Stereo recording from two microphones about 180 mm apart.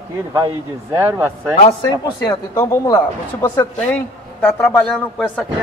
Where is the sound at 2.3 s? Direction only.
20° left (ahead or behind).